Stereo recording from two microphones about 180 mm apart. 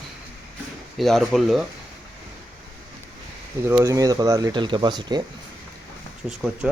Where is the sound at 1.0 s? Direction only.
Centre (ahead or behind).